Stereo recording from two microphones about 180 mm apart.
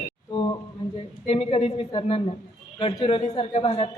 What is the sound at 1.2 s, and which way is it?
A woman's voice, 30° left (ahead or behind).